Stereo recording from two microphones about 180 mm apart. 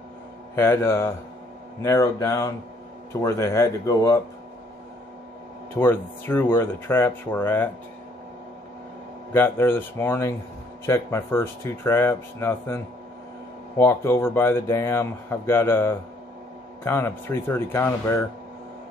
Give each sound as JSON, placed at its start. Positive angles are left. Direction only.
{"t": 0.6, "sound": "speech", "side_deg": 15}
{"t": 5.8, "sound": "speech", "side_deg": 10}
{"t": 9.3, "sound": "speech", "side_deg": 10}